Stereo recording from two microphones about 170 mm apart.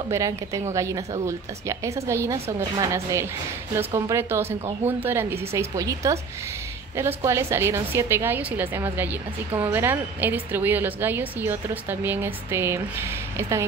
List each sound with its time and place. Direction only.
0.1 s a woman's voice: 20° right (ahead or behind)